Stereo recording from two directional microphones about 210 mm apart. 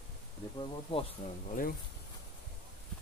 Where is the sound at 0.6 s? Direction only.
25° left (ahead or behind).